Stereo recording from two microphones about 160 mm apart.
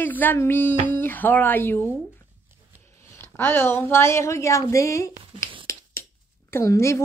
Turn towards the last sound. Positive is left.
turn(degrees=20)  # may be behind; listen again after turning